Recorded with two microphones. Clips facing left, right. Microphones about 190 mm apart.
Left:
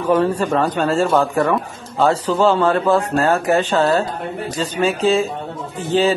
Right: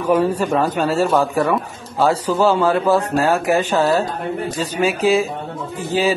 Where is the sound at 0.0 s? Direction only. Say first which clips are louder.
Even; 10° right (ahead or behind).